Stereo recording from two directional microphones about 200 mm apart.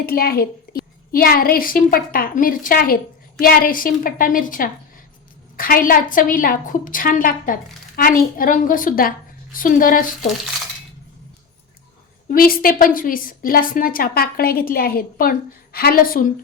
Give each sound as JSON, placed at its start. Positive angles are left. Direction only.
{"t": 0.0, "sound": "a woman's voice", "side_deg": 50}
{"t": 12.3, "sound": "a woman's voice", "side_deg": 45}